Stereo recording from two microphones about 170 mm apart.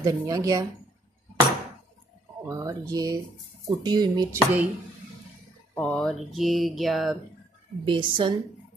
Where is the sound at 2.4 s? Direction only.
20° right (ahead or behind).